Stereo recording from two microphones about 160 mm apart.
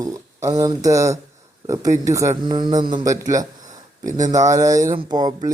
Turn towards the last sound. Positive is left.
turn(degrees=-25)  # may be behind; listen again after turning